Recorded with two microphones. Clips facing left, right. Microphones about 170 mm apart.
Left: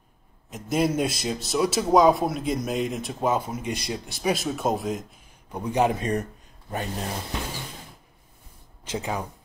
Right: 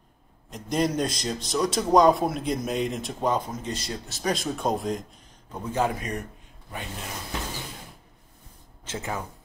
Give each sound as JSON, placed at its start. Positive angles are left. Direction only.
{"t": 0.5, "sound": "a man's voice", "side_deg": 5}
{"t": 5.5, "sound": "a man's voice", "side_deg": 15}
{"t": 6.7, "sound": "speech", "side_deg": 40}
{"t": 8.8, "sound": "speech", "side_deg": 15}